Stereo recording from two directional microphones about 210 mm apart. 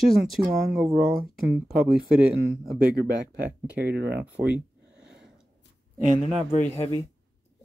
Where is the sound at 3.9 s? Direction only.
50° right (ahead or behind).